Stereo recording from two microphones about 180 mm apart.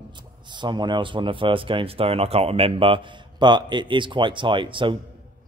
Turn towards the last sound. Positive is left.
turn(degrees=-25)  # may be behind; listen again after turning